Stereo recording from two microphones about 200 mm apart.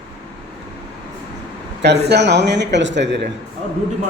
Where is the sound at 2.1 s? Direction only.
55° right (ahead or behind).